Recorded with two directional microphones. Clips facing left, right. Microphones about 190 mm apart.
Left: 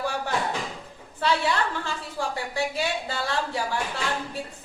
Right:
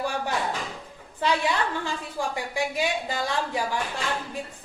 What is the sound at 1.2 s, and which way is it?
A woman's voice, 15° right (ahead or behind).